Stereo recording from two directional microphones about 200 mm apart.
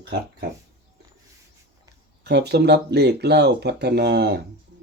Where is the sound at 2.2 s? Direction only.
60° right (ahead or behind).